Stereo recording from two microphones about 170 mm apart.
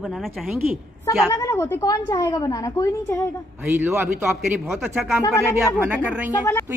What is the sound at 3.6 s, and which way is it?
A man's voice, 15° right (ahead or behind).